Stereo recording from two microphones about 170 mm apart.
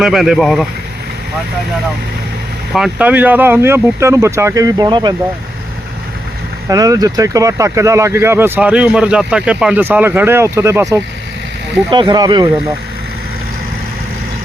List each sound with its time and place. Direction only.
0.0 s speech: 5° right (ahead or behind)
2.7 s speech: 5° right (ahead or behind); by 5.1 s 25° right (ahead or behind)
6.7 s speech: 20° right (ahead or behind)
11.9 s speech: 25° right (ahead or behind)